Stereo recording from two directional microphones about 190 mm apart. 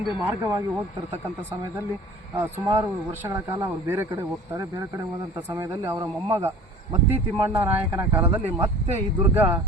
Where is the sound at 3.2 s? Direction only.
15° right (ahead or behind).